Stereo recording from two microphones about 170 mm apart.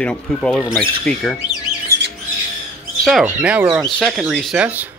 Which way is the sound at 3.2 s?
10° right (ahead or behind).